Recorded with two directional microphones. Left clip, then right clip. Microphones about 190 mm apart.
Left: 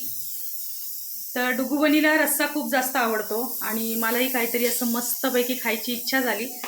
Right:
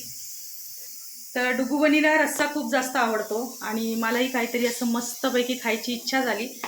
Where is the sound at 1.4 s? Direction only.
5° left (ahead or behind).